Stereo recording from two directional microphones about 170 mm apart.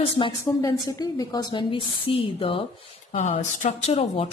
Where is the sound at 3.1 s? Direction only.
45° left (ahead or behind).